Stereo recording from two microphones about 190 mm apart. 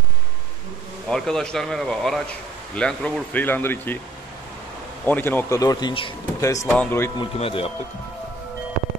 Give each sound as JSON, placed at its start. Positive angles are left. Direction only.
{"t": 1.0, "sound": "speech", "side_deg": 0}
{"t": 5.0, "sound": "speech", "side_deg": 10}
{"t": 7.2, "sound": "speech", "side_deg": 30}